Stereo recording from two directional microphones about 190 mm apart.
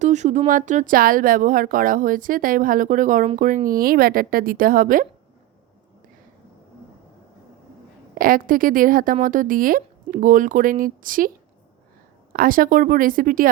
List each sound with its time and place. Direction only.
0.0 s speech: 40° right (ahead or behind)
8.2 s speech: 45° right (ahead or behind)
12.3 s speech: 50° right (ahead or behind)